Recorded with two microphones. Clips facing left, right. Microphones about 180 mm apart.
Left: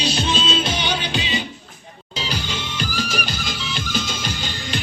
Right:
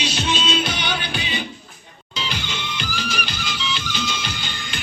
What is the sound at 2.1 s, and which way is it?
Music, 35° left (ahead or behind).